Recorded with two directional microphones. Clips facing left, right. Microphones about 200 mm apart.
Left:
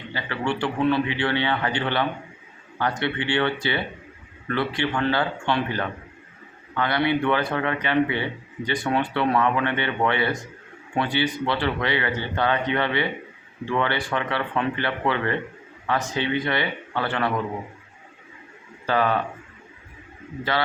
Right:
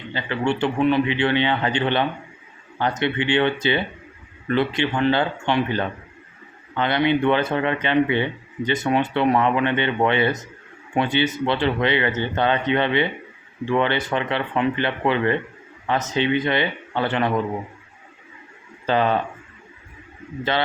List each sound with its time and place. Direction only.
0.1 s speech: 20° right (ahead or behind)
18.9 s speech: 25° right (ahead or behind)
20.4 s speech: 20° right (ahead or behind)